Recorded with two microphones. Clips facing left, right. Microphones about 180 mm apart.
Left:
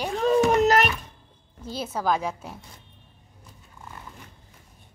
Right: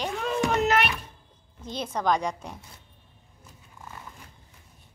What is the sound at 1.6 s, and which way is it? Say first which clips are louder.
Speech: even; 5° left (ahead or behind).